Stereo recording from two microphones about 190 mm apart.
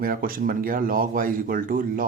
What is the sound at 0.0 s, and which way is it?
Speech, 50° right (ahead or behind).